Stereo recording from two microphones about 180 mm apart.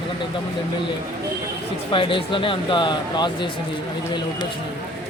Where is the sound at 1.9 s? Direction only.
30° left (ahead or behind).